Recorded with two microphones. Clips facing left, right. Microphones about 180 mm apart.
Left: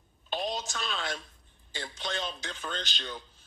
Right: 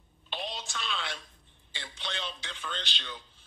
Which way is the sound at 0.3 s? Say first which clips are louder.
Left 5 dB; 45° left (ahead or behind).